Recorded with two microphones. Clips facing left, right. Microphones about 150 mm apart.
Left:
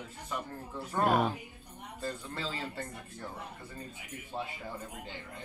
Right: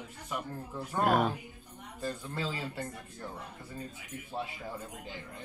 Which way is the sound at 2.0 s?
10° right (ahead or behind).